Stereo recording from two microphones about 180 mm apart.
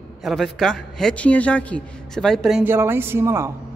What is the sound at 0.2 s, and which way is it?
Speech, centre (ahead or behind).